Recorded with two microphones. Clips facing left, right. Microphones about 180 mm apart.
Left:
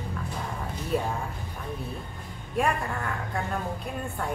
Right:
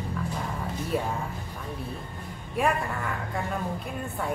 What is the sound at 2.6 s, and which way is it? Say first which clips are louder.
Speech: even; 5° right (ahead or behind).